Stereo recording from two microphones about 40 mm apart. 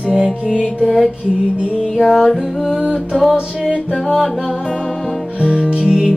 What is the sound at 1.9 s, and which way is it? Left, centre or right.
Music, centre.